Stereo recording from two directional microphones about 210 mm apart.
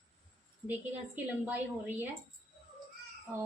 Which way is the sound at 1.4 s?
10° right (ahead or behind).